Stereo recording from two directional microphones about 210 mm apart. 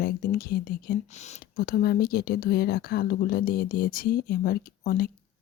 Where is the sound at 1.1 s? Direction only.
35° left (ahead or behind).